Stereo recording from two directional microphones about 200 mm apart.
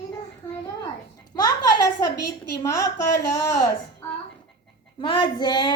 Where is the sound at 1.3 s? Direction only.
20° left (ahead or behind).